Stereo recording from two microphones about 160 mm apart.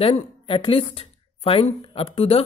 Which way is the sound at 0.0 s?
35° left (ahead or behind).